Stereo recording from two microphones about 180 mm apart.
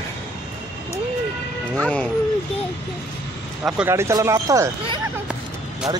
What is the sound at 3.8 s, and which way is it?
Speech, 15° right (ahead or behind).